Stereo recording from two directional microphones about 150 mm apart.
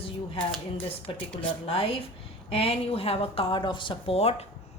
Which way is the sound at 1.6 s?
40° left (ahead or behind).